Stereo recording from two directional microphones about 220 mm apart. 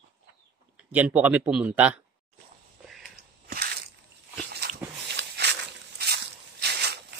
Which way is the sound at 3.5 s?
45° right (ahead or behind).